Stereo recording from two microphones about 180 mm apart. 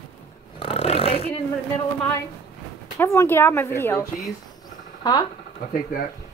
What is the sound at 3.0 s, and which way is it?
Speech, 15° left (ahead or behind).